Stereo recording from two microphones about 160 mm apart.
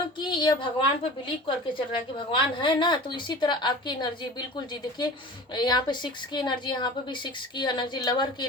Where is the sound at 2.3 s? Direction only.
30° left (ahead or behind).